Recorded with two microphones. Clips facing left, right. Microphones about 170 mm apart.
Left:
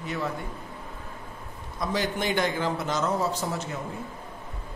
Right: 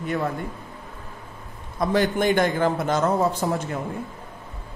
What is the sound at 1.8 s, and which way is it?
A man's voice, 55° right (ahead or behind).